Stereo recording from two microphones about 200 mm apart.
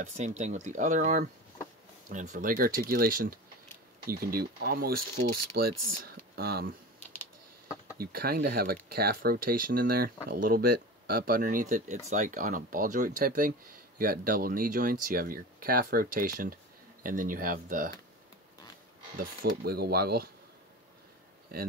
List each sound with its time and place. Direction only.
0.0 s speech: 35° right (ahead or behind); by 6.7 s 50° right (ahead or behind)
8.0 s speech: 50° right (ahead or behind)
19.5 s speech: 50° right (ahead or behind)